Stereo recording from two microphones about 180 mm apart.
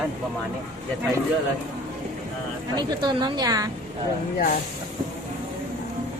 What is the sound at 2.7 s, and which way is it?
Speech, 25° right (ahead or behind).